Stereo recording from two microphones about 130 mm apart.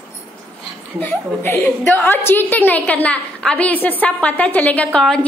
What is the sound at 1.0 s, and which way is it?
A woman's voice, 15° left (ahead or behind).